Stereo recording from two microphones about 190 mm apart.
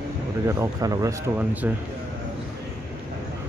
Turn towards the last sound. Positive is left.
turn(degrees=-10)  # may be behind; listen again after turning